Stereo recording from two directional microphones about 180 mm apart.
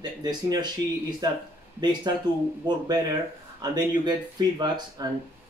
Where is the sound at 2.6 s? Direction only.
20° right (ahead or behind).